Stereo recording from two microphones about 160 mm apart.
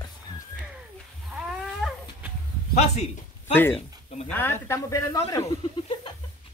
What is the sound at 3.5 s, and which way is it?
Speech, 10° left (ahead or behind).